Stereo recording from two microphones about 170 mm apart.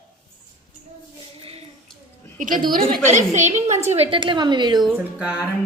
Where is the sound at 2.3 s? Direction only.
50° right (ahead or behind); by 4.8 s 25° right (ahead or behind).